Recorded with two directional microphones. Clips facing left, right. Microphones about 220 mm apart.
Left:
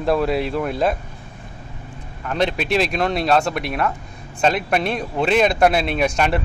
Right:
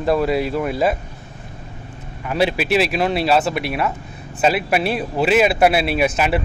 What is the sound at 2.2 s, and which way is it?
A man's voice, 5° right (ahead or behind).